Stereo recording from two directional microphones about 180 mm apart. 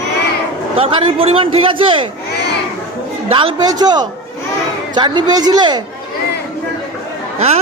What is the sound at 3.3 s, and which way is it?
Speech, 30° right (ahead or behind).